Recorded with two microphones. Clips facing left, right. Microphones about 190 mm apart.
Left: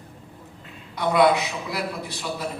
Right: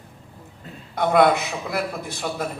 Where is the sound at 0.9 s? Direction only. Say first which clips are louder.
Right 2 dB; 50° right (ahead or behind).